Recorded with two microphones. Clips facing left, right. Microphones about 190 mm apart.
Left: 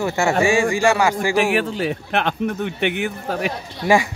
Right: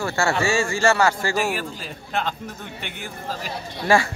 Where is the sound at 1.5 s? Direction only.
70° left (ahead or behind).